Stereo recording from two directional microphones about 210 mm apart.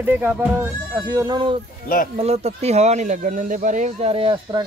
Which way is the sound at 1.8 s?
40° left (ahead or behind).